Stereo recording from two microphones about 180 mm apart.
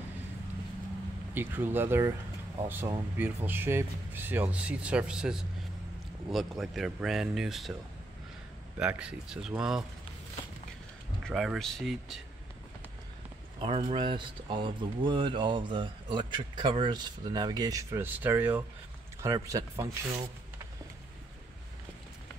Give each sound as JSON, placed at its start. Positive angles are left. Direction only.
{"t": 1.3, "sound": "speech", "side_deg": -10}
{"t": 8.7, "sound": "speech", "side_deg": -5}
{"t": 11.2, "sound": "speech", "side_deg": 0}
{"t": 13.6, "sound": "speech", "side_deg": -30}